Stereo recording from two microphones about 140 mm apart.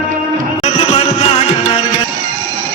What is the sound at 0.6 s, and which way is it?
Music, 45° left (ahead or behind).